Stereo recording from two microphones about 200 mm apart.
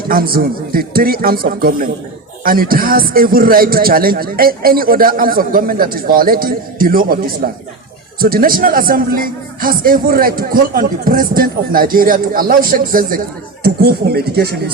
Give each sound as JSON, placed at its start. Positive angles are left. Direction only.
{"t": 0.1, "sound": "a man's voice", "side_deg": -50}